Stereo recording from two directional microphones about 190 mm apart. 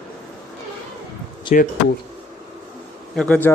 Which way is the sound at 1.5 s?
40° left (ahead or behind).